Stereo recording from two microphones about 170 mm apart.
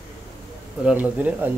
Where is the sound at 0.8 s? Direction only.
10° right (ahead or behind).